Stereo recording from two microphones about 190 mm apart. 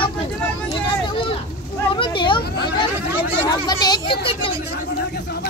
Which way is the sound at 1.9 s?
25° left (ahead or behind).